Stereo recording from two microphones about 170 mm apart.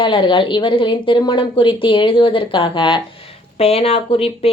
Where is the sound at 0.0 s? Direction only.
30° left (ahead or behind).